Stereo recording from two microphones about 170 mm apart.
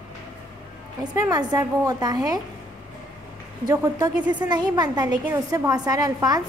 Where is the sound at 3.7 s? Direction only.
20° right (ahead or behind).